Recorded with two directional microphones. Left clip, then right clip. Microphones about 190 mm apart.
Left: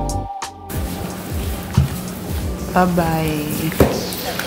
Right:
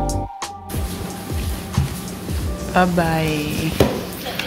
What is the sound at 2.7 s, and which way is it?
Speech, 5° right (ahead or behind).